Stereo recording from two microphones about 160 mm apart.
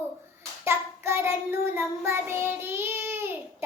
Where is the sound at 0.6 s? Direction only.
15° right (ahead or behind).